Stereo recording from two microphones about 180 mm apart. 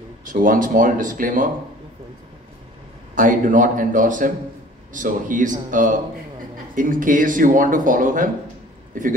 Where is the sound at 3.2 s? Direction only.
45° right (ahead or behind).